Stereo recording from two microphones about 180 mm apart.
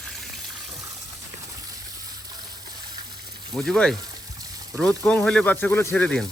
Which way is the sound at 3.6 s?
5° left (ahead or behind).